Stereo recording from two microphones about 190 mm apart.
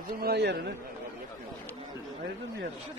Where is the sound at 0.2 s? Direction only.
60° right (ahead or behind).